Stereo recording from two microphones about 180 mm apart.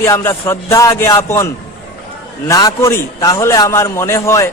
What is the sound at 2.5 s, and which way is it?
A man's voice, 20° left (ahead or behind).